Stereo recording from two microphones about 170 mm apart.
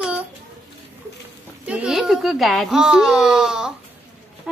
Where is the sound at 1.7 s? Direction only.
5° right (ahead or behind).